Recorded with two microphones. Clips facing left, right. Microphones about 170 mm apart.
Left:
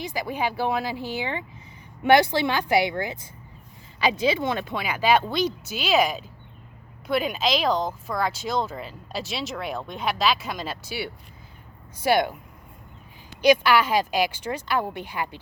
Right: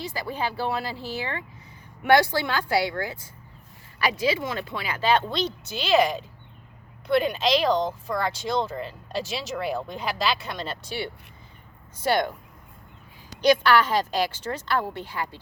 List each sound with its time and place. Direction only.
0.0 s a woman's voice: 15° left (ahead or behind)
7.2 s speech: 5° left (ahead or behind)
13.4 s speech: 10° left (ahead or behind)